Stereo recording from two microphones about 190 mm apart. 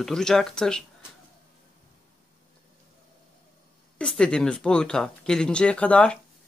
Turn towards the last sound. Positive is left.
turn(degrees=5)  # may be behind; listen again after turning